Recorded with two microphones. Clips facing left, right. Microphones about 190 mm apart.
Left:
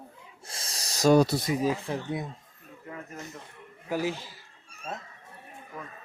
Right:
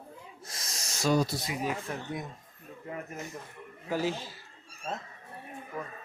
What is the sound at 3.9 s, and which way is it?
Speech, 15° left (ahead or behind).